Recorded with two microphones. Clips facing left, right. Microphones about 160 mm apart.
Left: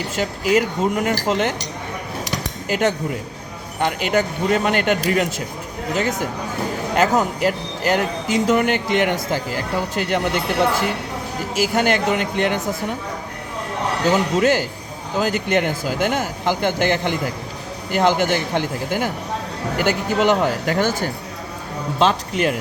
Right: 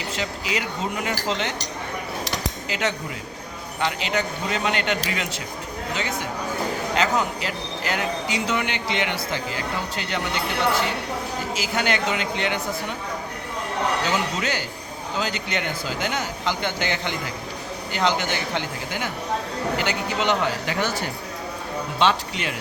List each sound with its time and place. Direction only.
0.2 s speech: 50° left (ahead or behind)
2.6 s speech: 50° left (ahead or behind)
6.9 s speech: 50° left (ahead or behind)
11.5 s speech: 50° left (ahead or behind)
14.1 s speech: 50° left (ahead or behind)